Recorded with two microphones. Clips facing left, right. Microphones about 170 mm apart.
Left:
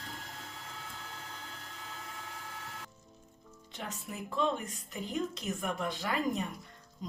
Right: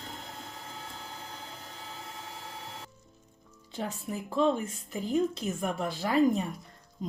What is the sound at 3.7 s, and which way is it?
Speech, 30° right (ahead or behind).